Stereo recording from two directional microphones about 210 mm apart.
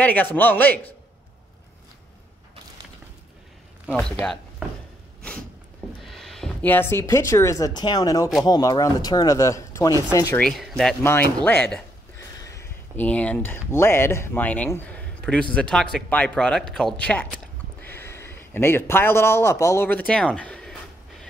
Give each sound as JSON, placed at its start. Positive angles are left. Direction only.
{"t": 0.0, "sound": "speech", "side_deg": 10}
{"t": 4.2, "sound": "speech", "side_deg": -5}
{"t": 6.0, "sound": "speech", "side_deg": 0}
{"t": 10.4, "sound": "a man's voice", "side_deg": 5}